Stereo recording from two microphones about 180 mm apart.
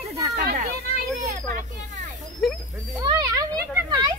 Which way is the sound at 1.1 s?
40° right (ahead or behind).